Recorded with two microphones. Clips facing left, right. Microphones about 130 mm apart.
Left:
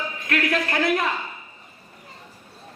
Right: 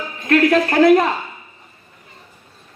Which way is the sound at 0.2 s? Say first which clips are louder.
Right 11 dB; 25° right (ahead or behind).